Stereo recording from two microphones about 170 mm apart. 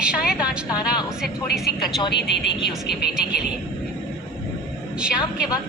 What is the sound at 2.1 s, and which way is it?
Speech, 85° left.